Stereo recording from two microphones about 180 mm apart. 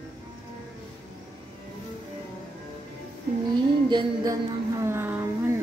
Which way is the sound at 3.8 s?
25° right (ahead or behind).